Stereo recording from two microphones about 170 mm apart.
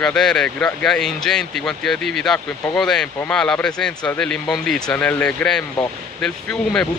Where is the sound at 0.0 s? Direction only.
5° left (ahead or behind).